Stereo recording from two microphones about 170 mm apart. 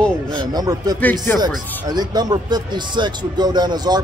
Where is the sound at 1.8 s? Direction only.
25° right (ahead or behind).